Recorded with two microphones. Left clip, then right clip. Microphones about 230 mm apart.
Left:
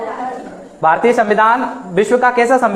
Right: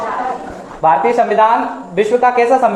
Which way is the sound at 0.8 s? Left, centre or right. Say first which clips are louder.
Even; left.